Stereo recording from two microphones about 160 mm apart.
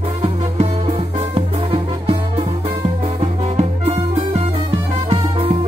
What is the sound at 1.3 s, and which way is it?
Music, 35° right (ahead or behind).